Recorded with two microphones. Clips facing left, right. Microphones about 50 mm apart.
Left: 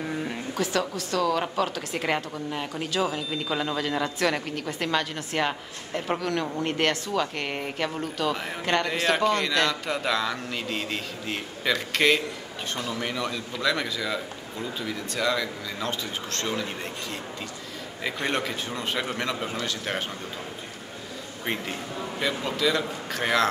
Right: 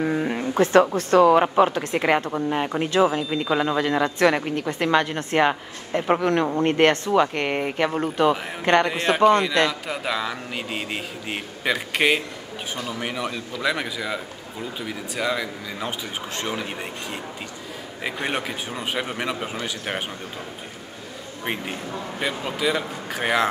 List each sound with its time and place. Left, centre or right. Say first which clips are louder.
0.0 s a sound: right 7 dB; right
0.6 s a woman's voice: right 11 dB; right; by 20.1 s centre
22.2 s a man's voice: right 1 dB; centre